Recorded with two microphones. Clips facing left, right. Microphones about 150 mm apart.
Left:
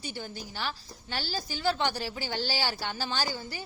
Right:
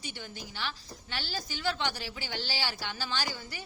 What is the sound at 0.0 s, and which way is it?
A woman's voice, 40° left (ahead or behind).